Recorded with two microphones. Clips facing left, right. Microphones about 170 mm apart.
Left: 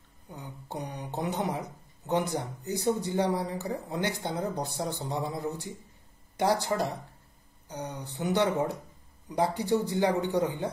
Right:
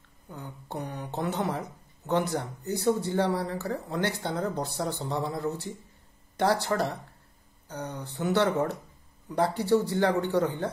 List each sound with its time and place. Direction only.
0.7 s speech: 15° left (ahead or behind)